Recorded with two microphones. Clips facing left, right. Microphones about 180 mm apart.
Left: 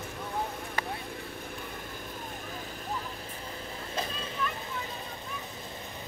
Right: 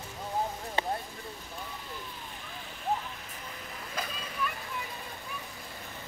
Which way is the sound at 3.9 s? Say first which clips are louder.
Left 3 dB; 25° left (ahead or behind).